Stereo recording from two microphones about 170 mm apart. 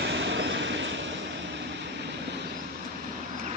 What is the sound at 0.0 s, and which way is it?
Vehicle, 90° right.